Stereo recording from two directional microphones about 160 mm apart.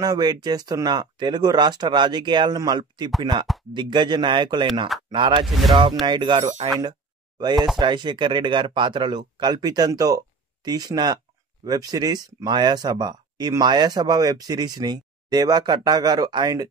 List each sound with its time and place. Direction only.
0.0 s speech: 25° right (ahead or behind)
5.5 s speech: centre (ahead or behind)
6.0 s speech: 30° right (ahead or behind)
6.4 s speech: 45° right (ahead or behind)
6.8 s a sound: 25° right (ahead or behind)
7.8 s speech: 30° right (ahead or behind)